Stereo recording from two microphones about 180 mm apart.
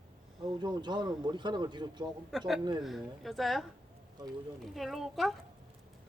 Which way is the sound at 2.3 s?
Centre (ahead or behind).